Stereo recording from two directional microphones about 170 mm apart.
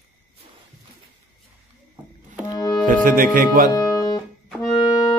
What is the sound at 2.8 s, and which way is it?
Speech, 55° right (ahead or behind).